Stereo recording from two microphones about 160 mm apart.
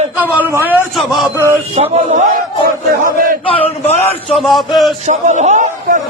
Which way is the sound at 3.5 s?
40° left (ahead or behind).